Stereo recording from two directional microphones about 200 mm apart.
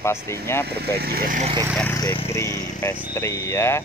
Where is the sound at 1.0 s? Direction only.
50° right (ahead or behind).